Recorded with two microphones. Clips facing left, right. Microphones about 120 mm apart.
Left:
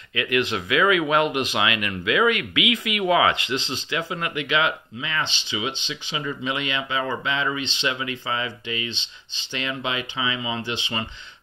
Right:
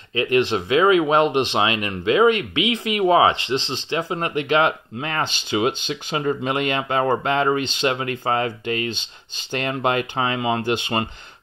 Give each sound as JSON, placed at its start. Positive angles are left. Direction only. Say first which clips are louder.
{"t": 0.1, "sound": "speech", "louder": "right 5 dB", "side_deg": -35}